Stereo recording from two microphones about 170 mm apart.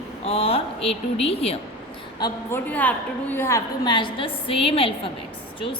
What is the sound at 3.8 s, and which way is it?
Speech, 30° left (ahead or behind).